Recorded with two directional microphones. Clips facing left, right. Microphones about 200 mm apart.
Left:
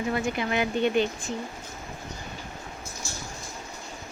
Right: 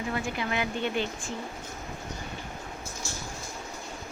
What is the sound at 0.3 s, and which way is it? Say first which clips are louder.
Speech: left 4 dB; 20° left (ahead or behind).